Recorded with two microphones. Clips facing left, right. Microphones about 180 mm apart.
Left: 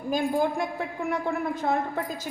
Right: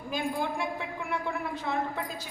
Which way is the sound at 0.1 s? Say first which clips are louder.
Left 6 dB; 40° left (ahead or behind).